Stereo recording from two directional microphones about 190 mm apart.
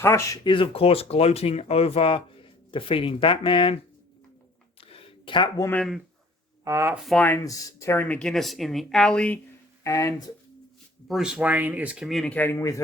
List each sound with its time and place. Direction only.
0.0 s speech: 15° left (ahead or behind)
4.8 s a sound: 30° left (ahead or behind)
6.7 s speech: 15° right (ahead or behind)
7.0 s speech: 5° left (ahead or behind)
11.1 s speech: 5° right (ahead or behind); by 12.8 s 15° left (ahead or behind)